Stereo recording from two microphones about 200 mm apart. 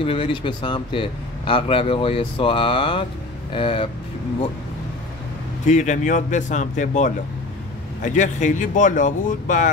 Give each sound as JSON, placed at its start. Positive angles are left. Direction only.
{"t": 0.0, "sound": "speech", "side_deg": 25}
{"t": 5.7, "sound": "speech", "side_deg": 35}